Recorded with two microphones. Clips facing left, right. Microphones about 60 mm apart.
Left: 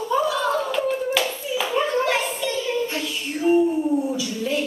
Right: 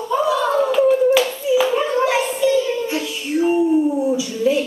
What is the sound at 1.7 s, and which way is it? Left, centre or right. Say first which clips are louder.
Child singing: right 3 dB; centre.